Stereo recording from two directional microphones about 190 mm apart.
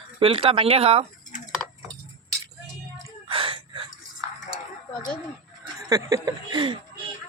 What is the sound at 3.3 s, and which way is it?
Gasp, 30° right (ahead or behind).